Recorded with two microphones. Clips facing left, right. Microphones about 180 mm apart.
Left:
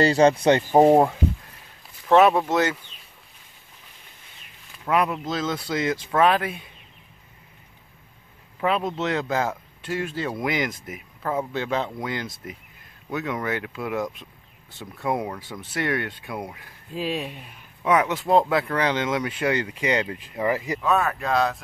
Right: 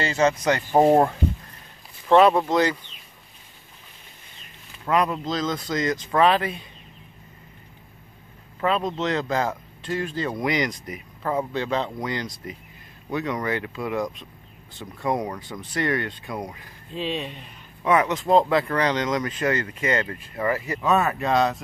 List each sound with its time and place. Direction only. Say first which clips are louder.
0.0 s speech: left 4 dB; 35° left (ahead or behind)
0.7 s speech: even; 10° left (ahead or behind)
4.8 s speech: even; 5° left (ahead or behind)
8.5 s speech: even; 10° left (ahead or behind)
20.8 s speech: right 3 dB; centre (ahead or behind)